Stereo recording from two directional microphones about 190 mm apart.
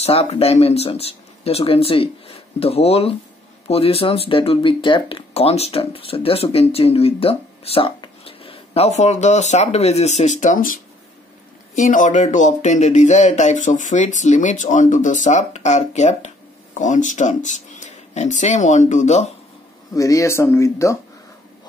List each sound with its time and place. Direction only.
0.0 s speech: 30° left (ahead or behind)
19.9 s speech: 15° left (ahead or behind)